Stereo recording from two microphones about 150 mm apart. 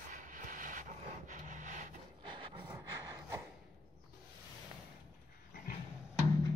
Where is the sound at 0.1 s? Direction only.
60° right (ahead or behind).